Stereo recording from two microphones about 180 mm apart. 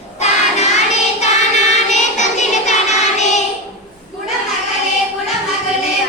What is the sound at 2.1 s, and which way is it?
Child singing, 40° left (ahead or behind).